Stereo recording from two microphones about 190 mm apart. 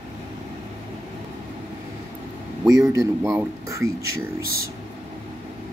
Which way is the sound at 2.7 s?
15° right (ahead or behind).